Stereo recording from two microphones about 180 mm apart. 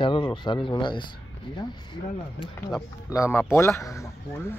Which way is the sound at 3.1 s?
15° left (ahead or behind).